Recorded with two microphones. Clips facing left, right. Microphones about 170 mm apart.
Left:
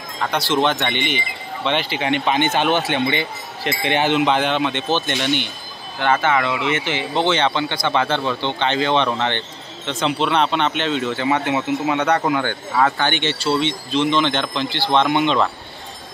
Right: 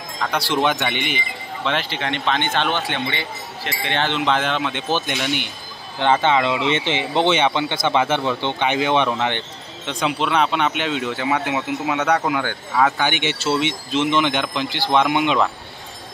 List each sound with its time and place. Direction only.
0.7 s speech: 5° right (ahead or behind)
5.9 s speech: 20° right (ahead or behind)